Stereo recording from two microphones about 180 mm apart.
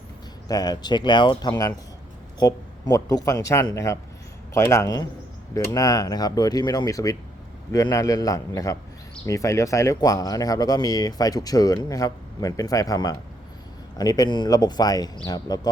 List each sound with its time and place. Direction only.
0.4 s speech: 20° left (ahead or behind)